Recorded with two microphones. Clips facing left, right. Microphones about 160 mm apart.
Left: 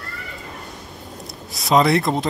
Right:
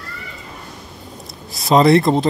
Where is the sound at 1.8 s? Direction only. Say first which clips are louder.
Right 5 dB; 30° right (ahead or behind).